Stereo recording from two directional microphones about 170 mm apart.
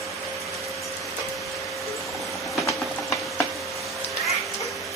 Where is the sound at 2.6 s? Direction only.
20° left (ahead or behind).